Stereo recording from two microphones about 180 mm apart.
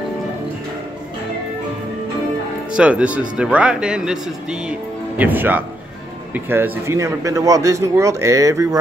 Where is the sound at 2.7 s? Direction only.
5° right (ahead or behind).